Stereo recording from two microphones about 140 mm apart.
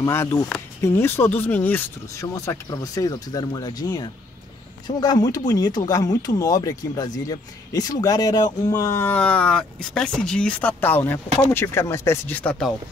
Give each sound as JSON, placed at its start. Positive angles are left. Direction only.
{"t": 0.0, "sound": "speech", "side_deg": 20}